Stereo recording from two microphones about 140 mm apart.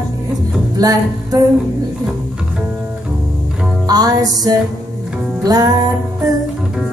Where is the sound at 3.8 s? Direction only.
30° right (ahead or behind).